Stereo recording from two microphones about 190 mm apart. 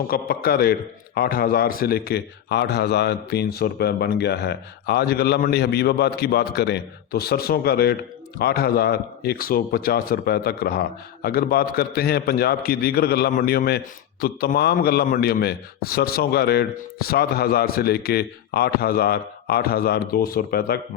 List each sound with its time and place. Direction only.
0.1 s a man's voice: 50° left (ahead or behind)